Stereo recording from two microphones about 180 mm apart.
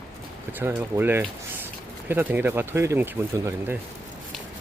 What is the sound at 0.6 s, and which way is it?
Speech, 10° right (ahead or behind).